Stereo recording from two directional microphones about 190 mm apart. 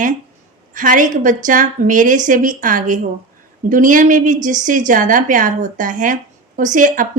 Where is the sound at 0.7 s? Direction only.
45° right (ahead or behind).